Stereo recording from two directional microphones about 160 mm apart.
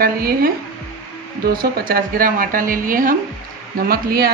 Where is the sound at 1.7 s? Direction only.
70° right (ahead or behind).